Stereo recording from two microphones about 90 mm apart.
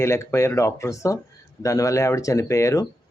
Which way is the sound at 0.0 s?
30° left (ahead or behind).